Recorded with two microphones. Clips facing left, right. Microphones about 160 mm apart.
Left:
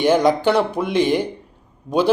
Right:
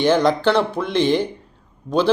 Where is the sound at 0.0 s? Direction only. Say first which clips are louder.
Left 1 dB; 15° left (ahead or behind).